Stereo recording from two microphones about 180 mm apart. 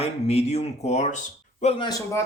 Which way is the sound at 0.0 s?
35° left (ahead or behind).